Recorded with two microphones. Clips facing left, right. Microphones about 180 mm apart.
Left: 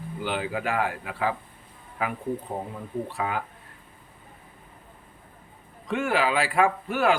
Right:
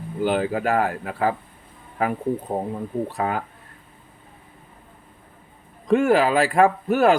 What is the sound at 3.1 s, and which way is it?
Speech, 45° right (ahead or behind).